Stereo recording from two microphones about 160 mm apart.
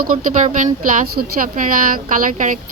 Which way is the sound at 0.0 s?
55° right (ahead or behind).